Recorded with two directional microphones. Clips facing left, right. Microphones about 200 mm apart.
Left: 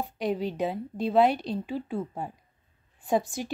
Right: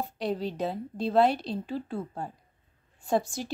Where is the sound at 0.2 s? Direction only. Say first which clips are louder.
Left 2 dB; 10° left (ahead or behind).